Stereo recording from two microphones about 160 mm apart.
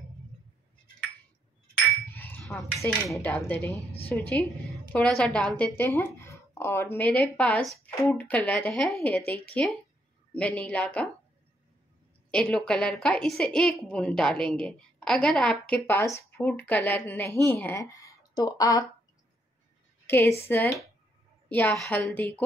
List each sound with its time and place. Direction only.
2.1 s a sound: 10° left (ahead or behind)
2.9 s a woman's voice: 10° left (ahead or behind)
12.3 s a woman's voice: 5° left (ahead or behind); by 18.9 s 20° left (ahead or behind)
20.1 s a woman's voice: 15° left (ahead or behind)